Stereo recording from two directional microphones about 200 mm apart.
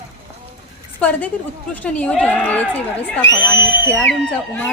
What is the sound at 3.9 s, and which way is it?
Speech, 5° left (ahead or behind).